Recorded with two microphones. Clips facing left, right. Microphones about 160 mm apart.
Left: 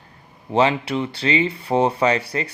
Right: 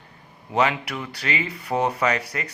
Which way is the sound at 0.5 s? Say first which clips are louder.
Left 4 dB; 30° left (ahead or behind).